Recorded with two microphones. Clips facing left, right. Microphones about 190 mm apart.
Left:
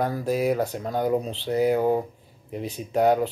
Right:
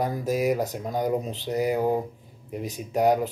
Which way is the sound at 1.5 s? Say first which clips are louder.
Left 3 dB; 5° right (ahead or behind).